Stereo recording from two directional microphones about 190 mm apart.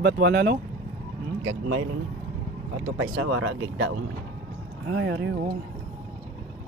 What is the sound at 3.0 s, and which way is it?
Speech, 90° right.